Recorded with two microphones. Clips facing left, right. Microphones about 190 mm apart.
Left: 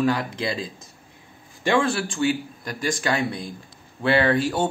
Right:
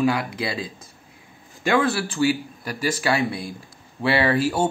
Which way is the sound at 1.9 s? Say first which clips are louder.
Right 2 dB; 5° right (ahead or behind).